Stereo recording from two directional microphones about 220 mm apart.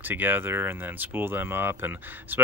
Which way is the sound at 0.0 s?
10° right (ahead or behind).